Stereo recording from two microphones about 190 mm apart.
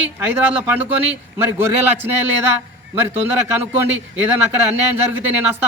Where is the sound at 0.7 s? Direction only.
10° right (ahead or behind).